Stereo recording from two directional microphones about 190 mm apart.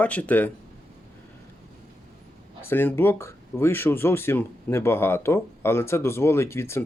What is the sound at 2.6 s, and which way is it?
Speech, 10° left (ahead or behind).